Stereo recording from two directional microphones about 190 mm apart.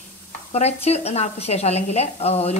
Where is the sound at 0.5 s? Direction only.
35° left (ahead or behind).